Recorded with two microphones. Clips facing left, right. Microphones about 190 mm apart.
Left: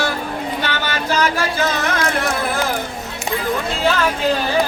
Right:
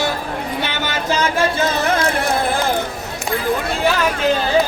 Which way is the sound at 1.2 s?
25° right (ahead or behind).